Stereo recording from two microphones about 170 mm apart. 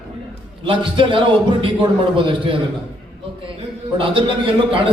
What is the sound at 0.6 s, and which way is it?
A man's voice, 30° right (ahead or behind).